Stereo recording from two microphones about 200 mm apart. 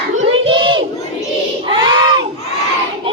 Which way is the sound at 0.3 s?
25° right (ahead or behind).